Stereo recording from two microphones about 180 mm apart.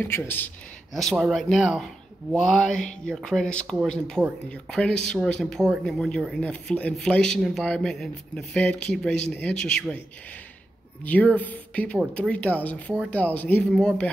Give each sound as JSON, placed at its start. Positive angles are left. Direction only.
{"t": 0.9, "sound": "speech", "side_deg": 0}
{"t": 11.3, "sound": "speech", "side_deg": 10}